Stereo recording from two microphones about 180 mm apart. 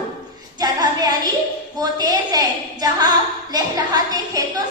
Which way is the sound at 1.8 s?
20° right (ahead or behind).